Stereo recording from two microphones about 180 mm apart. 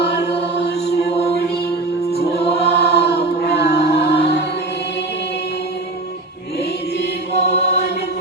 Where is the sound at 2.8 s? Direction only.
65° left (ahead or behind).